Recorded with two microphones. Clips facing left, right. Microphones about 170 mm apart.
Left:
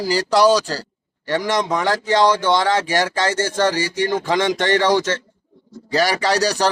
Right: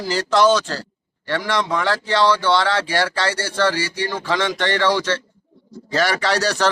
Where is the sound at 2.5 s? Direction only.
15° left (ahead or behind).